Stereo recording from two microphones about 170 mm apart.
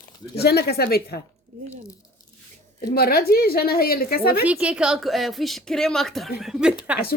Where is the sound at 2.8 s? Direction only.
65° left (ahead or behind).